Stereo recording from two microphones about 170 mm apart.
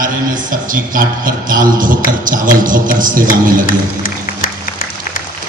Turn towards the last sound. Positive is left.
turn(degrees=55)  # may be behind; listen again after turning